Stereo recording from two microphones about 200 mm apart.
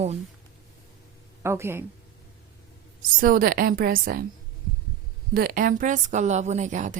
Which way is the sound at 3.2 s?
45° right (ahead or behind).